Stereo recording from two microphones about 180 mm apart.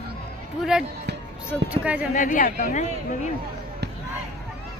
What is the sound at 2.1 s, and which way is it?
Speech, 50° left (ahead or behind).